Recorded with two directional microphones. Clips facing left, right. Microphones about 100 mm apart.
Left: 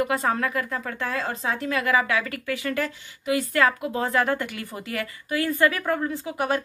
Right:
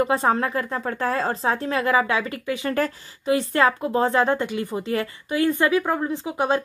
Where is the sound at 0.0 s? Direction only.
30° right (ahead or behind).